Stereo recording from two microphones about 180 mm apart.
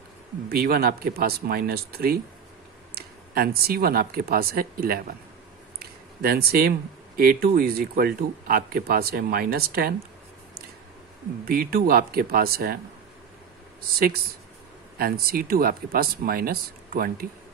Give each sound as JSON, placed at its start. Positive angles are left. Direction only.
{"t": 0.5, "sound": "speech", "side_deg": -60}
{"t": 5.8, "sound": "a sound", "side_deg": -60}
{"t": 7.2, "sound": "speech", "side_deg": -55}
{"t": 11.4, "sound": "speech", "side_deg": -55}
{"t": 15.0, "sound": "speech", "side_deg": -55}